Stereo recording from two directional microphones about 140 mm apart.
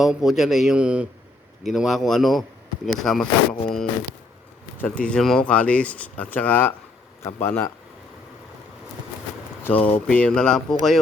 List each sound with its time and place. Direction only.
0.0 s a man's voice: centre (ahead or behind)
4.8 s speech: 10° left (ahead or behind)
9.6 s a man's voice: 10° left (ahead or behind)